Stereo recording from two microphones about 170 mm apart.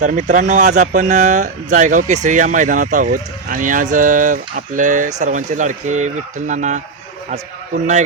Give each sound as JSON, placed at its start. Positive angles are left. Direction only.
{"t": 0.0, "sound": "speech", "side_deg": -45}